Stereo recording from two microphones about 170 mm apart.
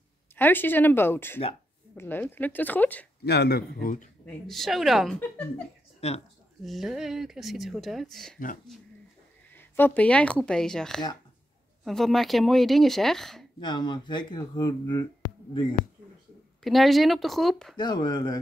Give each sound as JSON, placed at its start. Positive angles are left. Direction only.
{"t": 0.4, "sound": "speech", "side_deg": 10}
{"t": 3.3, "sound": "speech", "side_deg": 70}
{"t": 4.3, "sound": "speech", "side_deg": 0}
{"t": 5.9, "sound": "a sound", "side_deg": 35}
{"t": 6.6, "sound": "speech", "side_deg": 0}
{"t": 9.5, "sound": "speech", "side_deg": 10}
{"t": 13.6, "sound": "speech", "side_deg": 25}
{"t": 16.6, "sound": "speech", "side_deg": 0}
{"t": 17.7, "sound": "speech", "side_deg": 25}